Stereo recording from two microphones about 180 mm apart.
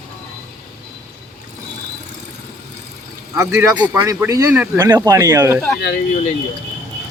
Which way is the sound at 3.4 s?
15° right (ahead or behind).